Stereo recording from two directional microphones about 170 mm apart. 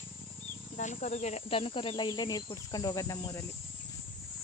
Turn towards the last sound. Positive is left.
turn(degrees=20)  # may be behind; listen again after turning